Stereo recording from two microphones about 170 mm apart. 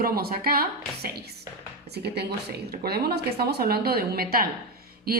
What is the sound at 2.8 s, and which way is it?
A woman's voice, 65° right (ahead or behind).